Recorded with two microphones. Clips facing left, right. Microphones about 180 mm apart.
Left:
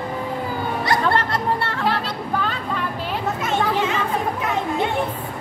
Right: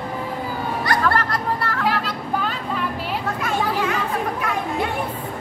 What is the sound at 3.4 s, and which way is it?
Chatter, 25° left (ahead or behind).